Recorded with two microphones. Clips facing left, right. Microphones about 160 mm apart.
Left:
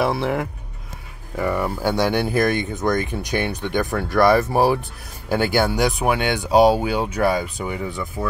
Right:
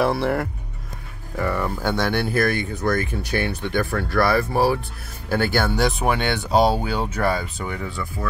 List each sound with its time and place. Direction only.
0.0 s speech: 5° left (ahead or behind); by 8.3 s 20° left (ahead or behind)